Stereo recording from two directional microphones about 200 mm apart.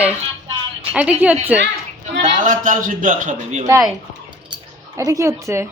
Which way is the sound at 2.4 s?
40° right (ahead or behind).